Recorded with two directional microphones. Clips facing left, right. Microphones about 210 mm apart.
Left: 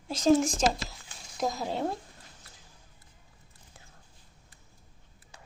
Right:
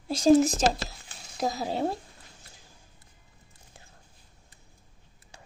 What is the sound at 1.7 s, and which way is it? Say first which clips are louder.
Speech: right 3 dB; 30° right (ahead or behind).